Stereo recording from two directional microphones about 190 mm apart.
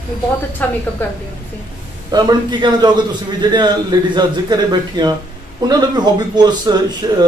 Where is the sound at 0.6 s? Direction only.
10° left (ahead or behind).